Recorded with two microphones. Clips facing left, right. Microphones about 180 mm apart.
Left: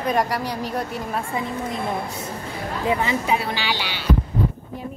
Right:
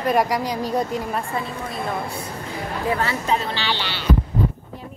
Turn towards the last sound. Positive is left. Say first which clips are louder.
# even
turn(degrees=10)  # may be behind; listen again after turning